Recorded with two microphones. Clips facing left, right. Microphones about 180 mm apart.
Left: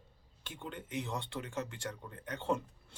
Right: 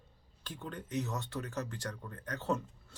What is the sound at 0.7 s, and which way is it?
Speech, 25° left (ahead or behind).